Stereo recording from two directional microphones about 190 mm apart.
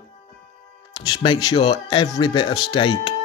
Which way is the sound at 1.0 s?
25° left (ahead or behind).